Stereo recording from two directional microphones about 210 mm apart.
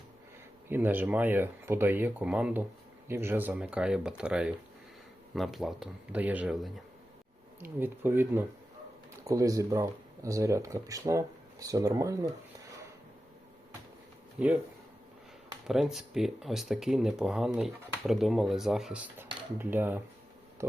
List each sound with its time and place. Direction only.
0.7 s speech: 10° right (ahead or behind)
14.3 s speech: 5° right (ahead or behind)
15.6 s speech: centre (ahead or behind)
20.6 s a sound: 15° right (ahead or behind)